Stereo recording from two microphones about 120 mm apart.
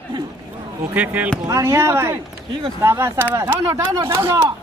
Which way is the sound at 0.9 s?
10° right (ahead or behind).